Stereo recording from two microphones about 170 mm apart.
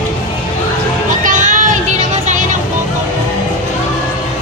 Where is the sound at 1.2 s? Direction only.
50° right (ahead or behind).